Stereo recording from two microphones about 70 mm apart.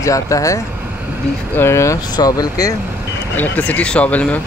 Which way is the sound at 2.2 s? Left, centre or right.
Left.